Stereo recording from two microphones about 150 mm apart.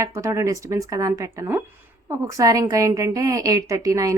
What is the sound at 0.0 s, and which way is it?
A woman's voice, 20° right (ahead or behind).